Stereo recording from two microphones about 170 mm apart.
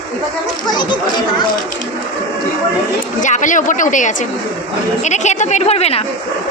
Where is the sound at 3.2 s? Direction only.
50° left (ahead or behind).